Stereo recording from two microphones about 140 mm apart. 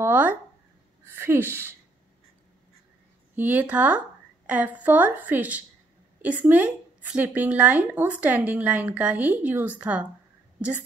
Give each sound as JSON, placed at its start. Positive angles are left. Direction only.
{"t": 0.0, "sound": "a sound", "side_deg": -15}
{"t": 1.0, "sound": "a woman's voice", "side_deg": -15}
{"t": 3.3, "sound": "a woman's voice", "side_deg": -15}